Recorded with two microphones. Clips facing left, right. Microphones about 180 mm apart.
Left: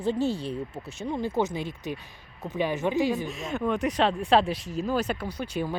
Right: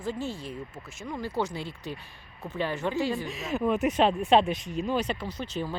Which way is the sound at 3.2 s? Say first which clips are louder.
Right 1 dB; centre (ahead or behind).